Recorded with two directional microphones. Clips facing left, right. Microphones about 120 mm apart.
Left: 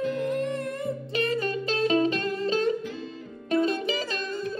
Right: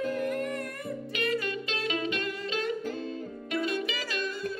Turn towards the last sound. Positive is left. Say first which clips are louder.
# left 3 dB
turn(degrees=30)  # may be behind; listen again after turning